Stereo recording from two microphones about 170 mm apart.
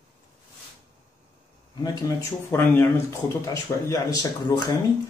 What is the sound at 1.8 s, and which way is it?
Speech, 15° left (ahead or behind).